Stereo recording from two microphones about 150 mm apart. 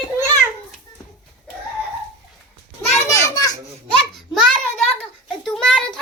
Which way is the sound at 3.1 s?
20° left (ahead or behind).